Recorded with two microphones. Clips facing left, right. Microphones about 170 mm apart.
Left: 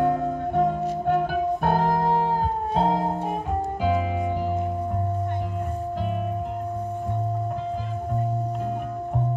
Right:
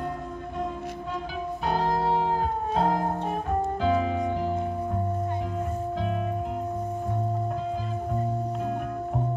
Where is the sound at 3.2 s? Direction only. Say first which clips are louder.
Even; 10° left (ahead or behind).